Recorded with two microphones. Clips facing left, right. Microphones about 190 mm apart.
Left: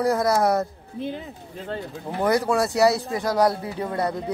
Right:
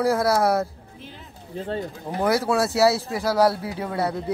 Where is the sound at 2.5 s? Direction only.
5° right (ahead or behind).